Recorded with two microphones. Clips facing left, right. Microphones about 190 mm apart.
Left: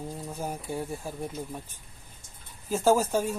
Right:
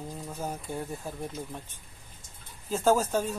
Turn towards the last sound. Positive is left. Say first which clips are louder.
# left 1 dB
turn(degrees=10)  # may be behind; listen again after turning